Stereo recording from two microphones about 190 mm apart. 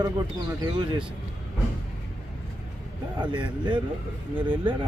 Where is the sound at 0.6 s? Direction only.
20° right (ahead or behind).